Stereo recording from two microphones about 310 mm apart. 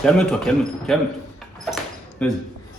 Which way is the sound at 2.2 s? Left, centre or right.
Centre.